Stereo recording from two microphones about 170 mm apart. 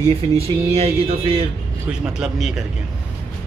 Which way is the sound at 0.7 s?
35° right (ahead or behind).